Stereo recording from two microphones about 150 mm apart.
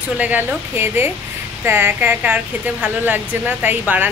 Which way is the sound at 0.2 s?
10° right (ahead or behind).